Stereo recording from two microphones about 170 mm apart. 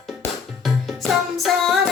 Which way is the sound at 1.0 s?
Centre (ahead or behind).